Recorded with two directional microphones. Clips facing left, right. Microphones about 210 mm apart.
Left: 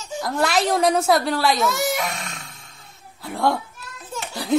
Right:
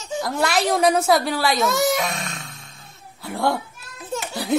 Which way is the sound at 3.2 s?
Centre (ahead or behind).